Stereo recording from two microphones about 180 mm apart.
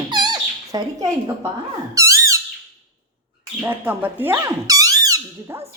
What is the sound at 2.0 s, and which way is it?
Squeak, 15° right (ahead or behind).